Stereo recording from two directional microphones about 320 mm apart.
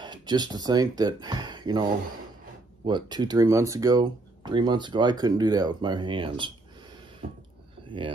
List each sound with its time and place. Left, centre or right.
0.0 s speech: centre
7.9 s speech: centre